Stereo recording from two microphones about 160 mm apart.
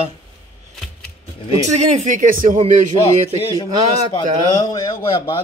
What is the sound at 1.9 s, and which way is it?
Speech, 55° right (ahead or behind).